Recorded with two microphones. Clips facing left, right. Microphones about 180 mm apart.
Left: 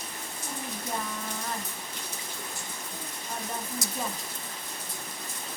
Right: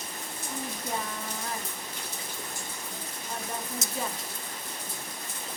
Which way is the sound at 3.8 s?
25° right (ahead or behind).